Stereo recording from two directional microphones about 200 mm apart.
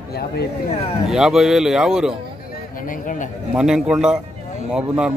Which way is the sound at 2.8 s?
40° left (ahead or behind).